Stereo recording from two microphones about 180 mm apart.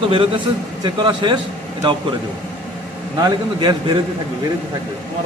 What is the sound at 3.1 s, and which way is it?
Speech, 25° right (ahead or behind).